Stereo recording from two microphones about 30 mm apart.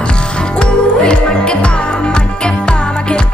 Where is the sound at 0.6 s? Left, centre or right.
Left.